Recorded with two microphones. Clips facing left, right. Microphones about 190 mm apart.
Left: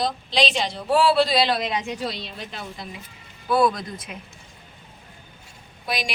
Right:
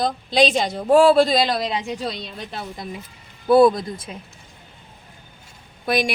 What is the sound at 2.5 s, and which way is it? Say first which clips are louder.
Speech: right 4 dB; 45° right (ahead or behind).